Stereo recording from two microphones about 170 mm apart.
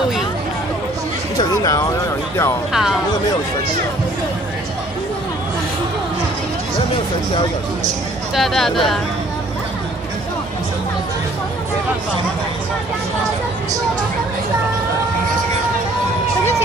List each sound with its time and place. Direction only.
1.4 s speech: 20° left (ahead or behind)
2.7 s speech: centre (ahead or behind)
8.4 s speech: centre (ahead or behind)